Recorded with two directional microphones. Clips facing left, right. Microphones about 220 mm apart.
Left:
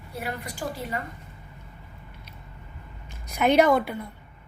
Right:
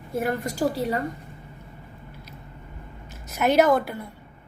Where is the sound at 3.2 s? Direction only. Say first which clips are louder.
Even; 5° right (ahead or behind).